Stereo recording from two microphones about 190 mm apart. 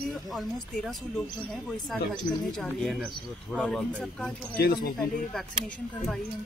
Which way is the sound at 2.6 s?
5° left (ahead or behind).